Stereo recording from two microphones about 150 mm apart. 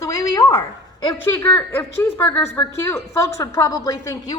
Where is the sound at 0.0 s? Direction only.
25° left (ahead or behind).